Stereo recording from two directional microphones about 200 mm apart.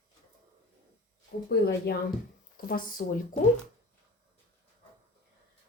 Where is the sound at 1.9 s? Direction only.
55° left (ahead or behind).